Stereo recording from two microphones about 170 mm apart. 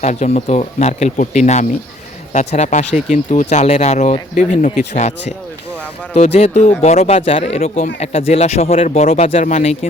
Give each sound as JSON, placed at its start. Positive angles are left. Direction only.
{"t": 0.0, "sound": "speech", "side_deg": 45}
{"t": 6.1, "sound": "speech", "side_deg": 40}